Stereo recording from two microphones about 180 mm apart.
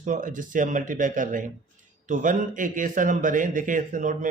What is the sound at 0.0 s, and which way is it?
A man's voice, 45° right (ahead or behind).